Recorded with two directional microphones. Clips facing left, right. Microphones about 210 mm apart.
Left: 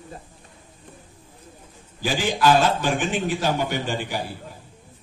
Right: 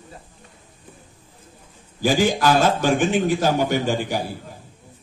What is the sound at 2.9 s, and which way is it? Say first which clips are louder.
Speech: right 5 dB; 45° right (ahead or behind).